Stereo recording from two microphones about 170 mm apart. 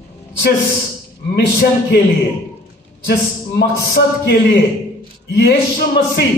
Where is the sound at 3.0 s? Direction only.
70° left (ahead or behind).